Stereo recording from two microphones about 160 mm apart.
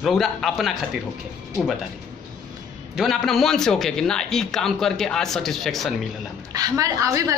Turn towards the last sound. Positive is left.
turn(degrees=-20)  # may be behind; listen again after turning